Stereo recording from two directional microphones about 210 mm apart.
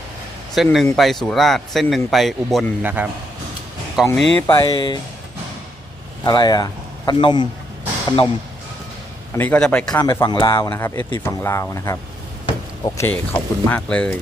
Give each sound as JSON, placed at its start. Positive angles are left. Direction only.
{"t": 0.5, "sound": "speech", "side_deg": 0}
{"t": 4.0, "sound": "speech", "side_deg": 5}
{"t": 6.2, "sound": "speech", "side_deg": 20}
{"t": 9.3, "sound": "speech", "side_deg": 10}
{"t": 9.9, "sound": "speech", "side_deg": 15}